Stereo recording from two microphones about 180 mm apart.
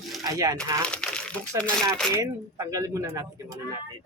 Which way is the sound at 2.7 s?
15° right (ahead or behind).